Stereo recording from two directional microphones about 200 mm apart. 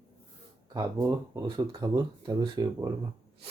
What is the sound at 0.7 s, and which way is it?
Speech, 15° right (ahead or behind).